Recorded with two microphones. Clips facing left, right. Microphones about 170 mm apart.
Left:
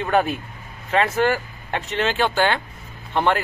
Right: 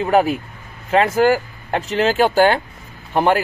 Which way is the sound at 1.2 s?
35° right (ahead or behind).